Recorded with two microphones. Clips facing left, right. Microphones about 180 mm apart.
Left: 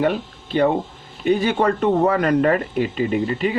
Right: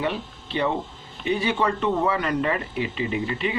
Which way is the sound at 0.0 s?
45° left (ahead or behind).